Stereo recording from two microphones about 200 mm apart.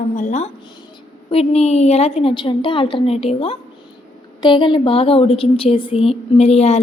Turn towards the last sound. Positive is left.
turn(degrees=30)  # may be behind; listen again after turning